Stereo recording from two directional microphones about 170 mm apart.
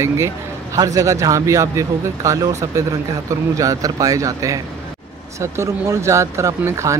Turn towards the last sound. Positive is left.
turn(degrees=-15)  # may be behind; listen again after turning